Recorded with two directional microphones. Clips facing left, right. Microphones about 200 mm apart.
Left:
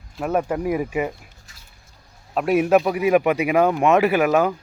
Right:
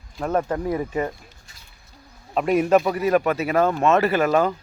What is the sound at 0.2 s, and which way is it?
A man's voice, 10° left (ahead or behind).